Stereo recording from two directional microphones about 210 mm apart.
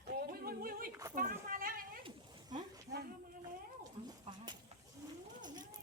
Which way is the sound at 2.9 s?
55° right (ahead or behind).